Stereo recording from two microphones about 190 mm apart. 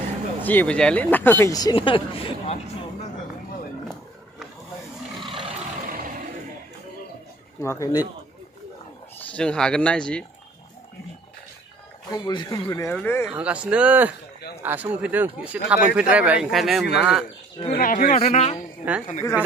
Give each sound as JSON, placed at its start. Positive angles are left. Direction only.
{"t": 0.4, "sound": "speech", "side_deg": 10}
{"t": 5.2, "sound": "roar", "side_deg": -25}
{"t": 7.6, "sound": "speech", "side_deg": 15}
{"t": 9.3, "sound": "speech", "side_deg": 5}
{"t": 12.1, "sound": "speech", "side_deg": 20}
{"t": 13.3, "sound": "speech", "side_deg": -5}
{"t": 17.7, "sound": "speech", "side_deg": 50}
{"t": 18.2, "sound": "a man's voice", "side_deg": 35}
{"t": 18.8, "sound": "speech", "side_deg": -10}